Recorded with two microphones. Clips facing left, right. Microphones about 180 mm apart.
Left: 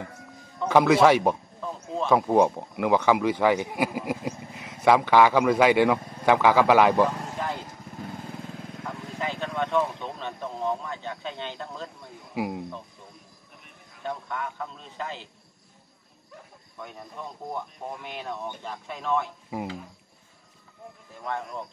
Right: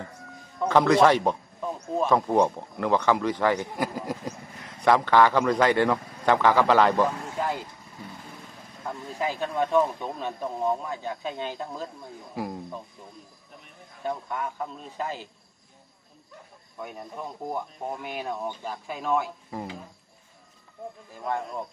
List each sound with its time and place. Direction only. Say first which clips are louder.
0.7 s speech: left 1 dB; 10° left (ahead or behind)
1.6 s a sound: right 3 dB; 15° right (ahead or behind)
2.0 s speech: left 2 dB; 10° left (ahead or behind)
8.8 s speech: right 3 dB; 10° right (ahead or behind)
12.4 s cricket: left 3 dB; 10° left (ahead or behind)
14.0 s speech: right 2 dB; 10° right (ahead or behind)
16.7 s speech: right 3 dB; 10° right (ahead or behind)
19.5 s speech: left 3 dB; 10° left (ahead or behind)